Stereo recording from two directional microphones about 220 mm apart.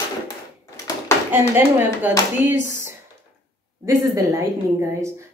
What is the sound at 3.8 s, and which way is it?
A woman's voice, 15° right (ahead or behind).